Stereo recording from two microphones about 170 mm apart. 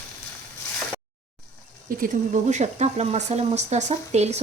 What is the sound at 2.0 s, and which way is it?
Speech, 45° right (ahead or behind).